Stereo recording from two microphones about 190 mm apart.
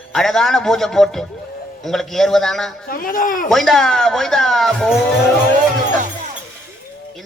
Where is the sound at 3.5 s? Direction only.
Centre (ahead or behind).